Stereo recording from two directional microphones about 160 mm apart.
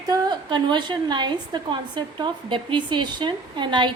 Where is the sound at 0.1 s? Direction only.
25° right (ahead or behind).